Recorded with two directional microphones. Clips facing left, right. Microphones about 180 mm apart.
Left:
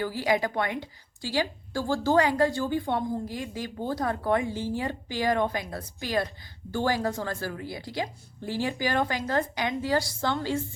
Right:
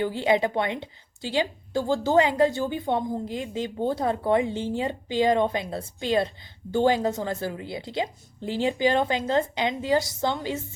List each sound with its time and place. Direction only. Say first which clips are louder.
0.0 s a woman's voice: right 4 dB; 25° right (ahead or behind)